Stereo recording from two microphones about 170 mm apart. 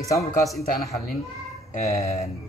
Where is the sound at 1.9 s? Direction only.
20° left (ahead or behind).